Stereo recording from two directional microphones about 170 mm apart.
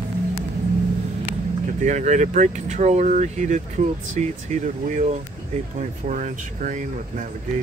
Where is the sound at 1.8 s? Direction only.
45° right (ahead or behind).